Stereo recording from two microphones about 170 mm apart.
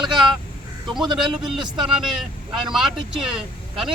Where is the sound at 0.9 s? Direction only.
25° right (ahead or behind).